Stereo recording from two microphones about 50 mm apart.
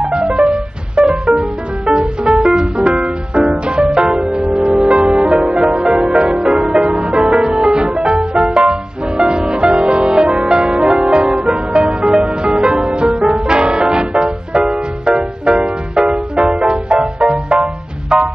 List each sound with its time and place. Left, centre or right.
0.0 s music: centre
1.4 s music: centre
2.3 s music: centre
8.6 s music: centre
9.8 s music: centre